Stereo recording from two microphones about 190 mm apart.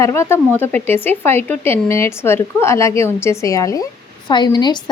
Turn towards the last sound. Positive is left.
turn(degrees=20)  # may be behind; listen again after turning